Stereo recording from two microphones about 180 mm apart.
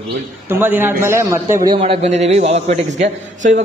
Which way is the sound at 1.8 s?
35° right (ahead or behind).